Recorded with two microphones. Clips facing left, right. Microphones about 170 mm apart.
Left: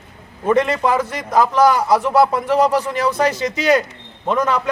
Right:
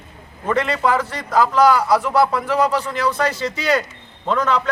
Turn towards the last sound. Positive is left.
turn(degrees=15)  # may be behind; listen again after turning